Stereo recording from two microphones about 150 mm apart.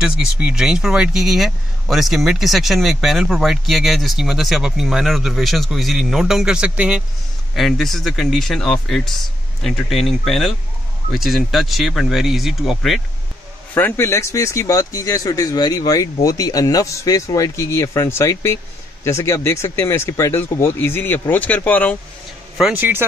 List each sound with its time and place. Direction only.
0.0 s speech: 5° right (ahead or behind)
13.7 s speech: 15° left (ahead or behind)
22.6 s speech: 10° right (ahead or behind)